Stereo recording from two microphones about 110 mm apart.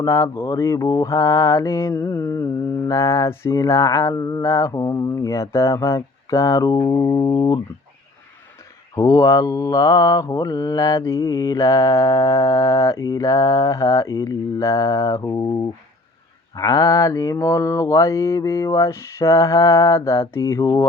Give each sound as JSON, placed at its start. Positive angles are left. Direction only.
{"t": 0.0, "sound": "mantra", "side_deg": 30}
{"t": 9.0, "sound": "mantra", "side_deg": 30}
{"t": 16.6, "sound": "mantra", "side_deg": 30}